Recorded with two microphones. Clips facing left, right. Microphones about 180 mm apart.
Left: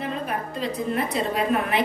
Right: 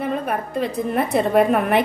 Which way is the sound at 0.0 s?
55° right (ahead or behind).